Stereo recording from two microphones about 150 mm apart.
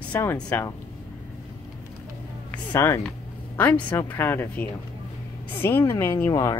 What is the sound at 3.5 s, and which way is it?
Speech, 15° left (ahead or behind).